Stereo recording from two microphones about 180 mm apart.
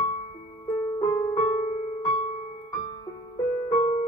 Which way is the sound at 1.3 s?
30° left (ahead or behind).